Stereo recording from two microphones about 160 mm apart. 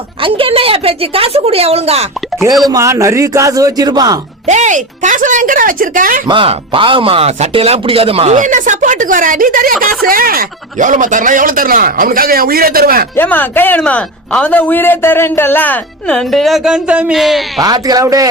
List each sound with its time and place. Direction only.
0.2 s speech: 35° right (ahead or behind)
2.6 s speech: 20° right (ahead or behind)
4.4 s speech: 45° right (ahead or behind)
6.2 s speech: 35° right (ahead or behind); by 13.1 s 65° right (ahead or behind)
13.1 s a man's voice: 10° left (ahead or behind)
17.6 s speech: 25° right (ahead or behind)